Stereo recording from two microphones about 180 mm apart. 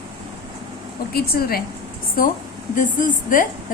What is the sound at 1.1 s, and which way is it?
A woman's voice, 55° left (ahead or behind).